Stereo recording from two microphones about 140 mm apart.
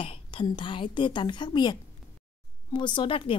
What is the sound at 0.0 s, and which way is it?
A woman's voice, 40° left (ahead or behind).